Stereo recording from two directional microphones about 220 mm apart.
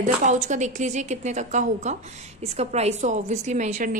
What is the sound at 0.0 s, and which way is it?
A woman's voice, 35° right (ahead or behind).